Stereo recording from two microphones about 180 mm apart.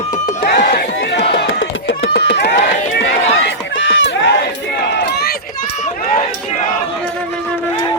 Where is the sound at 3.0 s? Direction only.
85° left.